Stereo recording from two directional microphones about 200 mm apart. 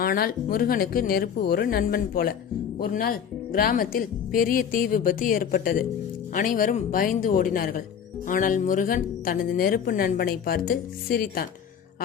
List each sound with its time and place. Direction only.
0.0 s speech: 45° left (ahead or behind)